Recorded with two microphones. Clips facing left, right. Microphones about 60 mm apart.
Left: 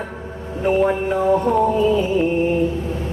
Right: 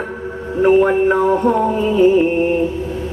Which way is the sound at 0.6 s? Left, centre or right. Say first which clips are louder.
Right 6 dB; right.